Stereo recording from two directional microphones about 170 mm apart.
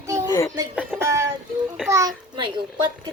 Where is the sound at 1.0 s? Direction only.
15° right (ahead or behind).